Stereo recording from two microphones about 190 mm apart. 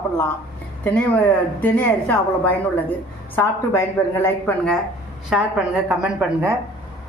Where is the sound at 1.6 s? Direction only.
10° left (ahead or behind).